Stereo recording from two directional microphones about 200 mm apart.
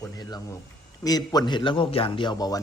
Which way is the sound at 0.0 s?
20° left (ahead or behind).